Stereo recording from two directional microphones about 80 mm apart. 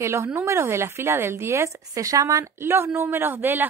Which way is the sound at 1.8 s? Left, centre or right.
Right.